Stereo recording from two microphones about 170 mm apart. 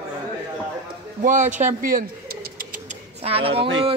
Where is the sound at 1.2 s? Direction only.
45° right (ahead or behind).